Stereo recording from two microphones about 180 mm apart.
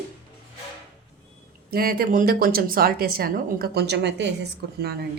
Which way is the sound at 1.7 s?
55° right (ahead or behind).